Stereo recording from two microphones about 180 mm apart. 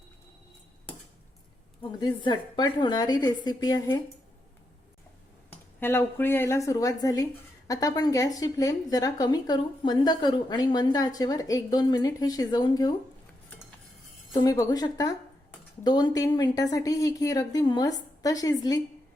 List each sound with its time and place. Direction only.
1.8 s speech: 25° left (ahead or behind)
5.5 s a woman's voice: 15° left (ahead or behind)
14.3 s speech: 20° left (ahead or behind)